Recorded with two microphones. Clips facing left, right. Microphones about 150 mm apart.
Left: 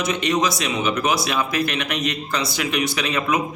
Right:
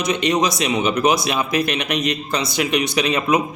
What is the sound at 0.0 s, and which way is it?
A man's voice, 20° right (ahead or behind).